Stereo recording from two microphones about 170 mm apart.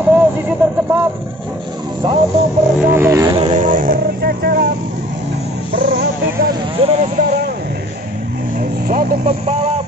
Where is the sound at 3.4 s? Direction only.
45° right (ahead or behind); by 4.7 s 65° right (ahead or behind).